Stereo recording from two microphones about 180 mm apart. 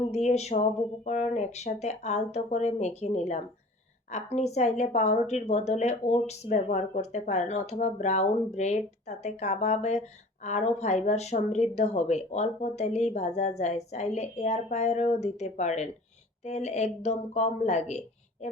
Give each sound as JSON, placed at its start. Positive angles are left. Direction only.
{"t": 0.1, "sound": "a woman's voice", "side_deg": 40}